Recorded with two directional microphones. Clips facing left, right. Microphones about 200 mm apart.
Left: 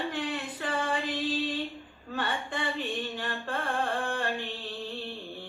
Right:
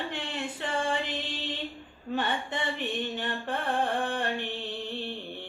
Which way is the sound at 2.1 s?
20° right (ahead or behind).